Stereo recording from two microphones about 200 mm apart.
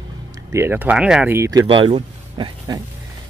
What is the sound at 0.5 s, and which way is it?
Speech, 10° right (ahead or behind).